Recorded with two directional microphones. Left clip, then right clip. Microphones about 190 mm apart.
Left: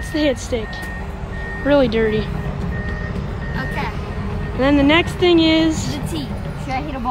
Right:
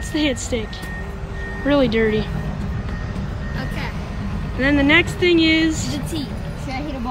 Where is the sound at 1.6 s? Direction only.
Centre (ahead or behind).